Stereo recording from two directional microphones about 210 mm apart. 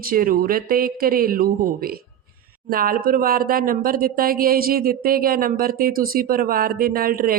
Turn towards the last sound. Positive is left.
turn(degrees=-45)  # may be behind; listen again after turning